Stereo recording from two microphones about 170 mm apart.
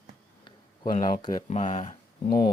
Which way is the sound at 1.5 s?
45° left (ahead or behind).